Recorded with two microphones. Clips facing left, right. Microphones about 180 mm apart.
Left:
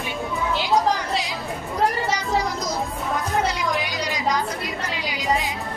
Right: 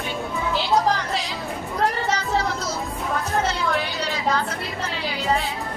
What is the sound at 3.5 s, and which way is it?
A woman's voice, 15° left (ahead or behind).